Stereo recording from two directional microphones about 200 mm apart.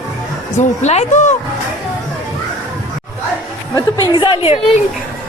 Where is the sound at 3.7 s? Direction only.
25° left (ahead or behind).